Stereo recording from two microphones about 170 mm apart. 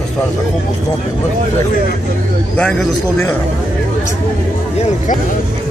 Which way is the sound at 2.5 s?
5° left (ahead or behind).